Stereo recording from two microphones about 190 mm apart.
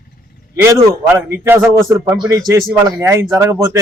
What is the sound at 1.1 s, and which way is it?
Speech, 15° right (ahead or behind).